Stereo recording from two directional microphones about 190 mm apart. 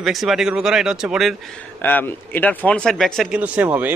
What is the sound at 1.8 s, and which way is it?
A man's voice, 10° left (ahead or behind).